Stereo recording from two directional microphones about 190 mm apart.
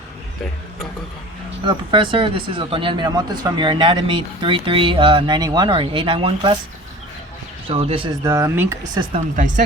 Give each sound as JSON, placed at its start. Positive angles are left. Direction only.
{"t": 1.6, "sound": "speech", "side_deg": -25}
{"t": 7.7, "sound": "speech", "side_deg": -30}
{"t": 8.2, "sound": "speech", "side_deg": -15}